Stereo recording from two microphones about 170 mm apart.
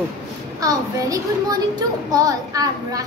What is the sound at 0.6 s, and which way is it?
A woman's voice, 20° right (ahead or behind).